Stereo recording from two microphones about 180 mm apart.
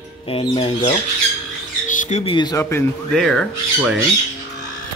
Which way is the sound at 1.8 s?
45° left (ahead or behind).